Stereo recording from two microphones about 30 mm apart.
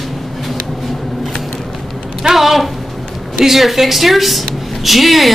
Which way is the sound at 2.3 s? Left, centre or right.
Centre.